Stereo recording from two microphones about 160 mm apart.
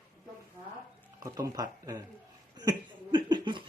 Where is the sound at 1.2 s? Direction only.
20° right (ahead or behind).